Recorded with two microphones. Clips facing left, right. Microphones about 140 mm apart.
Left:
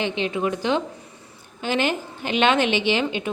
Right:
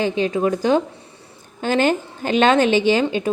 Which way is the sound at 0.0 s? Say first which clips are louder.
Right 5 dB; 40° right (ahead or behind).